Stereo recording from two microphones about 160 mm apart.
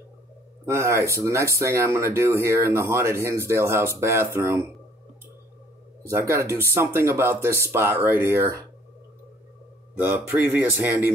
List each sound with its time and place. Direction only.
0.7 s speech: 15° right (ahead or behind)
6.0 s speech: 15° right (ahead or behind)
9.9 s speech: 10° right (ahead or behind)